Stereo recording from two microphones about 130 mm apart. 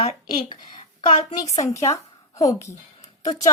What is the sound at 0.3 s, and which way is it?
Speech, 35° left (ahead or behind).